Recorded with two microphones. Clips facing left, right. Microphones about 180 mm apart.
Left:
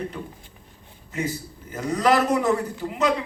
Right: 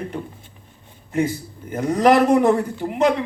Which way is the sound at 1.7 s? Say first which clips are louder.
Right 5 dB; 50° right (ahead or behind).